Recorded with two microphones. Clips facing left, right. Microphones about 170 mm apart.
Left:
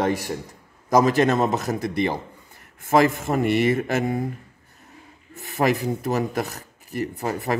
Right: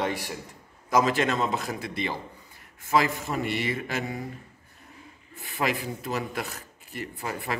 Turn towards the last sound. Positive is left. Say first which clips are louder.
# left 7 dB
turn(degrees=40)  # may be behind; listen again after turning